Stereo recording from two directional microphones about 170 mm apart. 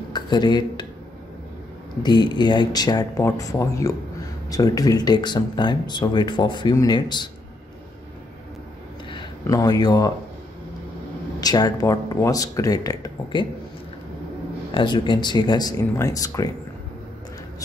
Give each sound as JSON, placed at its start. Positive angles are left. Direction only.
{"t": 0.1, "sound": "speech", "side_deg": 25}
{"t": 2.0, "sound": "speech", "side_deg": 25}
{"t": 9.1, "sound": "speech", "side_deg": 20}
{"t": 11.4, "sound": "speech", "side_deg": 20}
{"t": 14.7, "sound": "speech", "side_deg": 30}